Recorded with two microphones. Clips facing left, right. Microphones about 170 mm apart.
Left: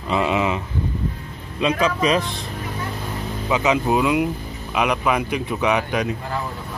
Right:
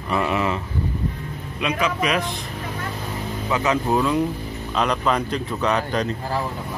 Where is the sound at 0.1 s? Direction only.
20° left (ahead or behind).